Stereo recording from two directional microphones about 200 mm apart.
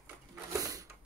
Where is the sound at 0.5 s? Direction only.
15° right (ahead or behind).